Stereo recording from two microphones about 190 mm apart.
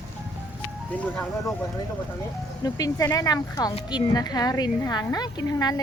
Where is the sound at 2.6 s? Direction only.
20° left (ahead or behind).